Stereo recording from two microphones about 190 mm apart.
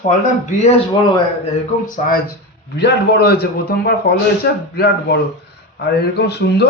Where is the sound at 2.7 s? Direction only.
60° left (ahead or behind).